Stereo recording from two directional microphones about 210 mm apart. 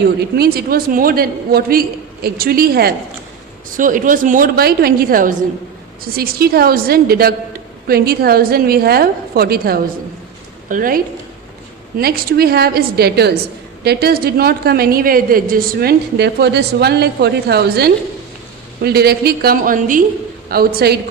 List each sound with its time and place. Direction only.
0.0 s a woman's voice: 50° right (ahead or behind)